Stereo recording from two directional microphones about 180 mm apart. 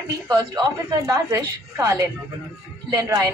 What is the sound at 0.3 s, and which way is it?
A woman's voice, 25° right (ahead or behind).